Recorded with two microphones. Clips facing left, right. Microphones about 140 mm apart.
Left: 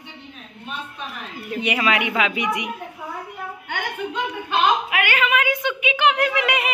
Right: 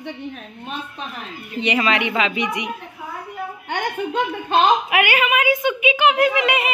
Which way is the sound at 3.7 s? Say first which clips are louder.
Right 4 dB; 40° right (ahead or behind).